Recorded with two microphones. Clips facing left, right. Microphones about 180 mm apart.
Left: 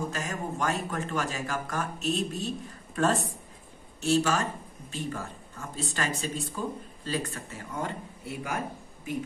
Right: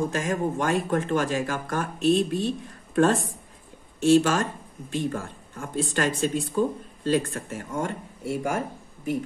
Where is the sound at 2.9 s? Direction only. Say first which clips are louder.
Right 6 dB; 55° right (ahead or behind).